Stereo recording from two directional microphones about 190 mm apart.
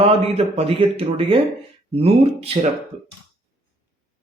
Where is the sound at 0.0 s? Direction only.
30° right (ahead or behind).